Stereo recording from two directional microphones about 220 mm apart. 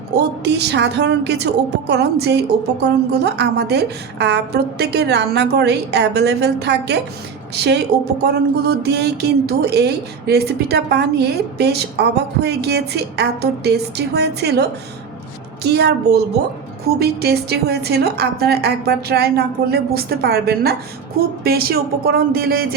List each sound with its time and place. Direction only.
0.2 s speech: 50° right (ahead or behind)